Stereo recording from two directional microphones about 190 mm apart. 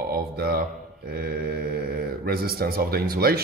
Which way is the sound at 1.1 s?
55° right (ahead or behind).